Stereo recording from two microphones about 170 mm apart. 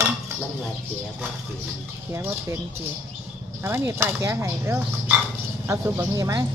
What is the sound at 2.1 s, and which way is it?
Speech, 15° right (ahead or behind).